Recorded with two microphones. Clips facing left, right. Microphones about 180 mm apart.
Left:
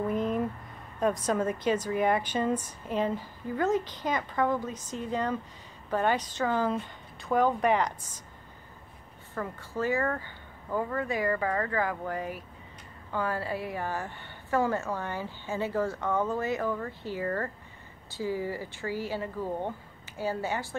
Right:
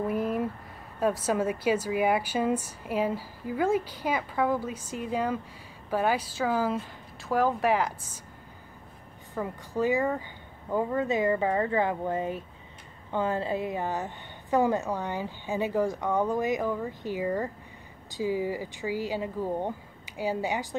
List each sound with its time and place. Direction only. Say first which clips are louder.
0.0 s a sound: even; 5° right (ahead or behind)
0.9 s a woman's voice: right 1 dB; 5° right (ahead or behind)
9.3 s a woman's voice: right 3 dB; 15° right (ahead or behind)